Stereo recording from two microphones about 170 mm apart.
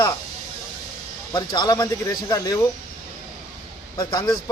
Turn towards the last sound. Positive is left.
turn(degrees=25)  # may be behind; listen again after turning